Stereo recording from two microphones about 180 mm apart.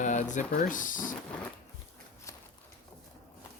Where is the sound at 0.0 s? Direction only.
45° left (ahead or behind).